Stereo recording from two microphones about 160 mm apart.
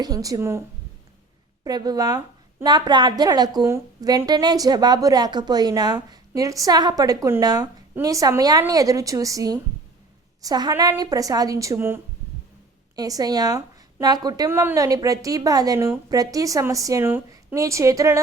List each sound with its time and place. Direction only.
0.0 s a woman's voice: 20° right (ahead or behind)
1.6 s a woman's voice: 25° right (ahead or behind)
13.0 s a woman's voice: 25° right (ahead or behind)